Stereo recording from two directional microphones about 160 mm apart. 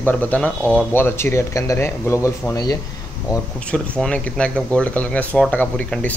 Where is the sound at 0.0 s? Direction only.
10° left (ahead or behind).